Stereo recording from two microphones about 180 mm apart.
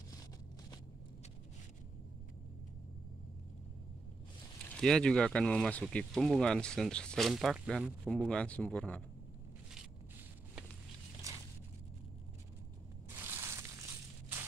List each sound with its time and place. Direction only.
4.7 s speech: 5° left (ahead or behind)
13.1 s crushing: 10° right (ahead or behind)